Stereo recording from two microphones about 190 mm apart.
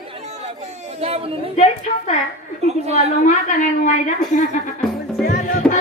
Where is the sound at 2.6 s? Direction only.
35° right (ahead or behind).